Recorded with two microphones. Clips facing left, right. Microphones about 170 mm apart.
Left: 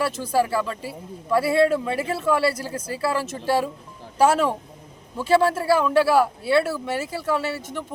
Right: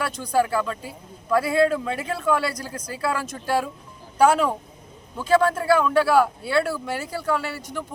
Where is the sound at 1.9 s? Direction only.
30° left (ahead or behind).